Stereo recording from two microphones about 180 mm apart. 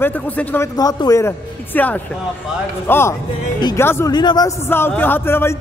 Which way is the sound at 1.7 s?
10° left (ahead or behind).